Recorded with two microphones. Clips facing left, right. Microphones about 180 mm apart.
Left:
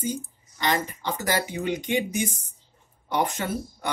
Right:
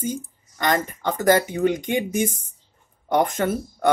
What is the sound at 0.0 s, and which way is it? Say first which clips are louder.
Speech: right 2 dB; 50° right (ahead or behind).